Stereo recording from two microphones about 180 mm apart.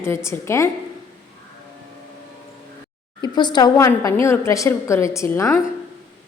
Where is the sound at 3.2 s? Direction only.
25° left (ahead or behind).